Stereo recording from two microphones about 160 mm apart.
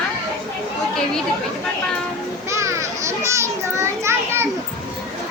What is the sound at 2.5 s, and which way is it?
A child's voice, 20° right (ahead or behind).